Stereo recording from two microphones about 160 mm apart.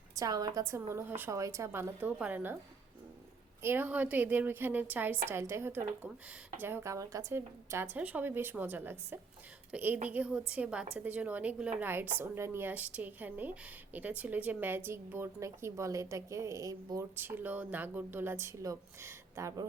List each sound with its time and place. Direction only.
0.2 s a woman's voice: 25° right (ahead or behind)
3.6 s a woman's voice: 15° right (ahead or behind)